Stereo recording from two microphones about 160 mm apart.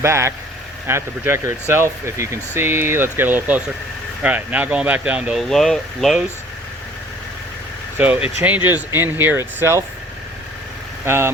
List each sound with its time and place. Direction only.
0.0 s speech: 15° right (ahead or behind); by 6.2 s centre (ahead or behind)
7.9 s speech: 10° right (ahead or behind)
11.0 s speech: 15° right (ahead or behind)